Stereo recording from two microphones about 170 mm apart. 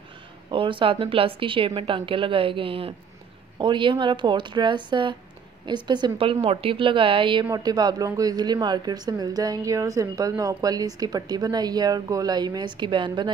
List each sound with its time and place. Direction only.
0.5 s speech: 30° right (ahead or behind)